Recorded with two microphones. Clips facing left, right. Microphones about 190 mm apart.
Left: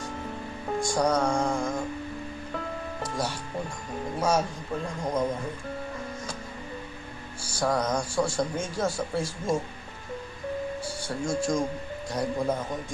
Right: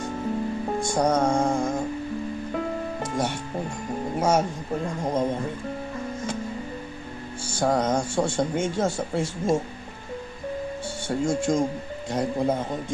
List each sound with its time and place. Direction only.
0.7 s music: 20° right (ahead or behind)
3.0 s music: 25° right (ahead or behind)
4.2 s speech: 25° right (ahead or behind)
7.4 s speech: 25° right (ahead or behind)
11.1 s speech: 25° right (ahead or behind)